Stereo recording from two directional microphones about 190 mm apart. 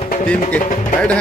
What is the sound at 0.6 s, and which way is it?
Speech, 40° left (ahead or behind).